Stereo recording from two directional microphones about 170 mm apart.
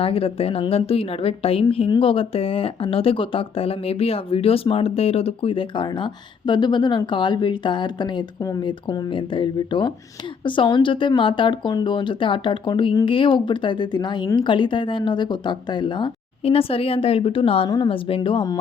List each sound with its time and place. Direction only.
0.0 s speech: 35° left (ahead or behind)